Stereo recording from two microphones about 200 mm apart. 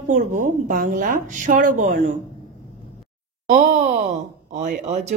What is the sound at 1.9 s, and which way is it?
Speech, 70° right (ahead or behind).